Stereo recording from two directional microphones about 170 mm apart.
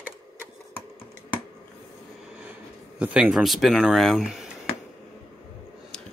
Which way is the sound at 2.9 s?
10° right (ahead or behind).